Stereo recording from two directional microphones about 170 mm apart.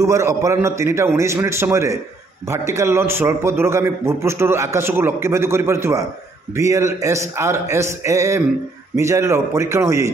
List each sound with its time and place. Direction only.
0.0 s a man's voice: 15° right (ahead or behind)